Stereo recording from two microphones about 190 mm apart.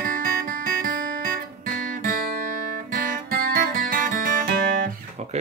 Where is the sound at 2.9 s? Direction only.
45° right (ahead or behind).